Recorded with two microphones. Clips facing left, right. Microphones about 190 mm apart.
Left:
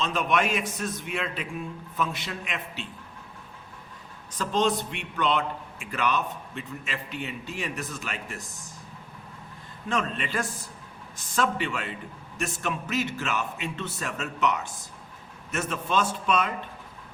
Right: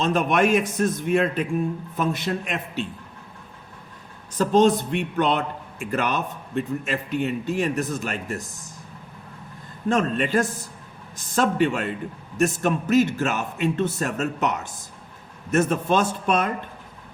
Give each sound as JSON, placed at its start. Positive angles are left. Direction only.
{"t": 0.0, "sound": "a man's voice", "side_deg": -45}
{"t": 4.4, "sound": "a man's voice", "side_deg": -45}
{"t": 9.9, "sound": "a man's voice", "side_deg": -45}